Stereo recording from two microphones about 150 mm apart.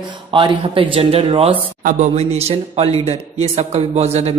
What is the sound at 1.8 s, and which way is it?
A man's voice, 50° right (ahead or behind).